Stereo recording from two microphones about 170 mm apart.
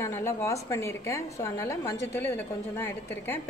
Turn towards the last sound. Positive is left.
turn(degrees=15)  # may be behind; listen again after turning